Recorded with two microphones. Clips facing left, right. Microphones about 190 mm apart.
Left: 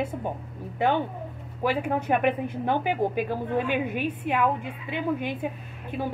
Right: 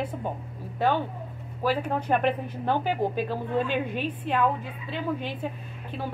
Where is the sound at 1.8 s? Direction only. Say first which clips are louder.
Left 1 dB; 10° left (ahead or behind).